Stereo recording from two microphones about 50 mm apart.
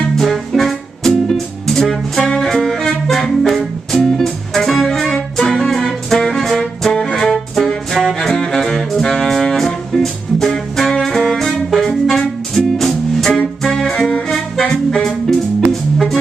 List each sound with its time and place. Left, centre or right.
0.1 s music: centre
5.7 s music: centre